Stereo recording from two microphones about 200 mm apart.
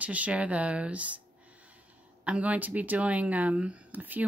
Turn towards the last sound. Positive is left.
turn(degrees=-10)  # may be behind; listen again after turning